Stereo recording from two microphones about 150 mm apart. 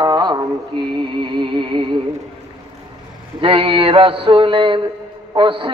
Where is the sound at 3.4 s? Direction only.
35° right (ahead or behind).